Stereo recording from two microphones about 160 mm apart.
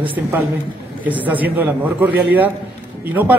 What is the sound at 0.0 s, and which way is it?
A man's voice, 10° right (ahead or behind).